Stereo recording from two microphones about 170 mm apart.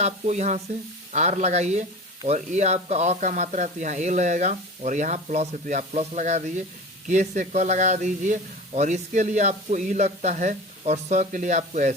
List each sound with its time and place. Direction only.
0.0 s speech: 40° right (ahead or behind)